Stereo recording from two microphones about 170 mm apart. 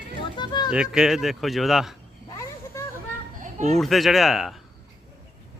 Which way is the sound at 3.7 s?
Centre (ahead or behind).